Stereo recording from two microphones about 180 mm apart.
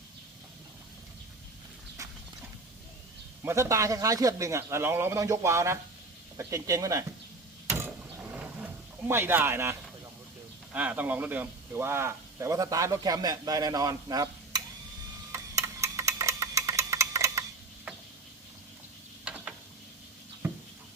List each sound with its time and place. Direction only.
2.0 s clip-clop: 15° right (ahead or behind)
3.4 s a man's voice: 15° right (ahead or behind)
8.4 s a sound: 5° right (ahead or behind)
10.7 s a man's voice: 10° right (ahead or behind)
15.3 s tick-tock: 15° right (ahead or behind)
19.2 s ratchet: 5° right (ahead or behind)
20.4 s a sound: 10° right (ahead or behind)